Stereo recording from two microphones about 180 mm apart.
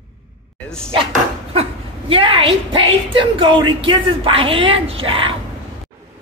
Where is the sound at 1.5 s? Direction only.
30° right (ahead or behind).